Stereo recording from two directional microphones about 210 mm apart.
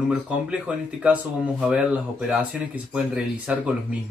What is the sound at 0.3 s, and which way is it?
Speech, 5° right (ahead or behind).